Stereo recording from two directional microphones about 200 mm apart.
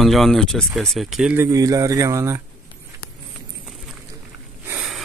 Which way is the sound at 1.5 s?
15° right (ahead or behind).